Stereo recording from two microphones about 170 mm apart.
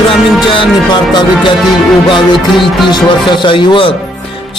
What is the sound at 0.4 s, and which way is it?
Music, 30° left (ahead or behind).